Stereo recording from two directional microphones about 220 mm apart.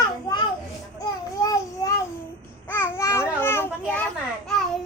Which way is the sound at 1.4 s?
15° left (ahead or behind).